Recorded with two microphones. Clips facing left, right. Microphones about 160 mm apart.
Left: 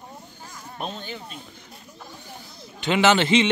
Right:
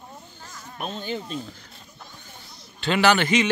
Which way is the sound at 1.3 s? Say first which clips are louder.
Right 8 dB; 20° left (ahead or behind).